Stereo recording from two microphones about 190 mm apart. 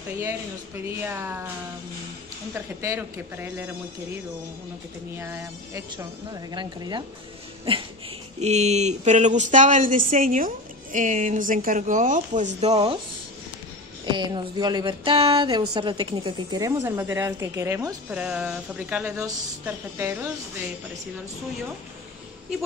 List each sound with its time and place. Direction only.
0.8 s speech: 10° right (ahead or behind)
2.5 s speech: 15° right (ahead or behind)
5.1 s speech: 15° right (ahead or behind)
6.5 s speech: 25° right (ahead or behind)
14.0 s speech: 25° right (ahead or behind)